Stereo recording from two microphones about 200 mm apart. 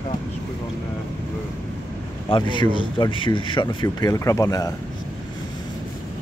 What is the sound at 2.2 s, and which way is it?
Speech, 25° left (ahead or behind).